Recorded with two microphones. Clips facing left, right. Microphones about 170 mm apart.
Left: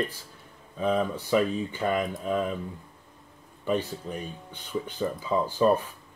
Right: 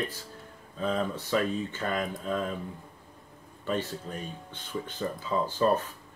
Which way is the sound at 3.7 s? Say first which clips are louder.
Left 3 dB; 15° left (ahead or behind).